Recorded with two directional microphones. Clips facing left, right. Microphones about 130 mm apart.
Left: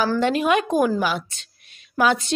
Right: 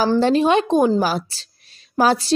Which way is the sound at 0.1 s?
30° right (ahead or behind).